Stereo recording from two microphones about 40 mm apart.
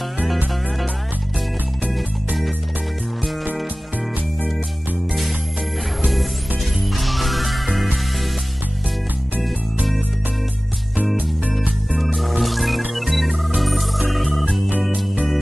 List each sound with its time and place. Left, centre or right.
1.9 s music: centre
6.9 s music: centre
12.2 s music: centre